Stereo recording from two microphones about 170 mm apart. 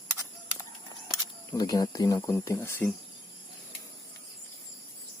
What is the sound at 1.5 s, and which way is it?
Speech, 20° left (ahead or behind).